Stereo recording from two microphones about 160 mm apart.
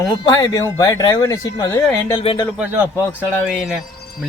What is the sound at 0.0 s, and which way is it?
Speech, 20° left (ahead or behind).